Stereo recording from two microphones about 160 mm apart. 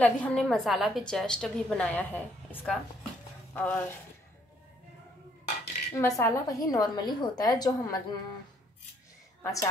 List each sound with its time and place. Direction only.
0.0 s a woman's voice: 5° left (ahead or behind)
3.5 s a sound: 10° left (ahead or behind)
5.9 s a woman's voice: 20° left (ahead or behind)
9.4 s a woman's voice: 20° left (ahead or behind)